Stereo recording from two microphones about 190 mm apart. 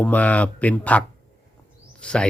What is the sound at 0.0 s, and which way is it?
Speech, 10° left (ahead or behind).